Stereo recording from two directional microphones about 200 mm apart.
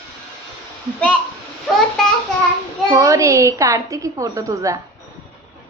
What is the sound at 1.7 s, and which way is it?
Speech, centre (ahead or behind).